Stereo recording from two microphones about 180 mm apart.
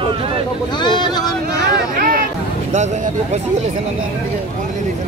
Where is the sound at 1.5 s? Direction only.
65° right (ahead or behind).